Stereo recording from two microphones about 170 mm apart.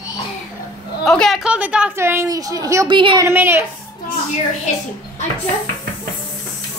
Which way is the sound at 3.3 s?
15° right (ahead or behind).